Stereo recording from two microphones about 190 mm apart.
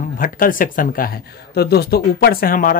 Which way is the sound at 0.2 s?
45° left (ahead or behind).